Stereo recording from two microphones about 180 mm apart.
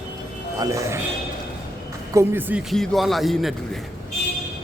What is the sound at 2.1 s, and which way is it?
Music, 15° right (ahead or behind).